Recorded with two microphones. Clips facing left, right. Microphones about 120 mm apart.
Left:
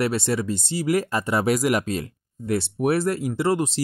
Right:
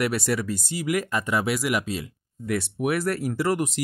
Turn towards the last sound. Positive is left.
turn(degrees=25)  # may be behind; listen again after turning